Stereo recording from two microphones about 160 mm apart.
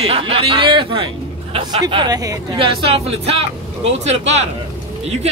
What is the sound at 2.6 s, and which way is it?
Speech, 35° right (ahead or behind).